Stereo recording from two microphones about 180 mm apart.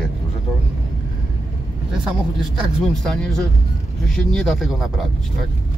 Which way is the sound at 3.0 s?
5° left (ahead or behind).